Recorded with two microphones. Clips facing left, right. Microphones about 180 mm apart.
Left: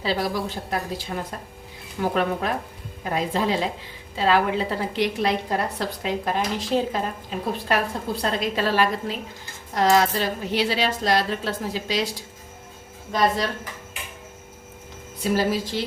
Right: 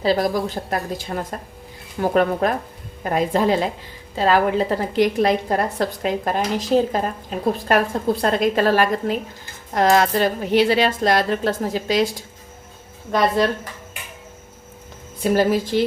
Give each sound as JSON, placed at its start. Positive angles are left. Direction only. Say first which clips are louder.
{"t": 0.0, "sound": "a woman's voice", "louder": "right 6 dB", "side_deg": -45}
{"t": 13.1, "sound": "speech", "louder": "right 4 dB", "side_deg": -60}
{"t": 15.2, "sound": "a woman's voice", "louder": "right 5 dB", "side_deg": -50}